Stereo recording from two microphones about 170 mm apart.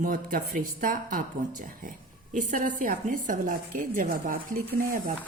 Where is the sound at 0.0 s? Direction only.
55° right (ahead or behind).